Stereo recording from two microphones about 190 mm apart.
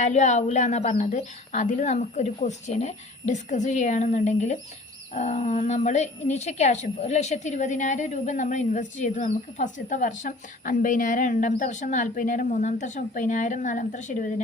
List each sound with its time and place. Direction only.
0.0 s a woman's voice: 40° left (ahead or behind)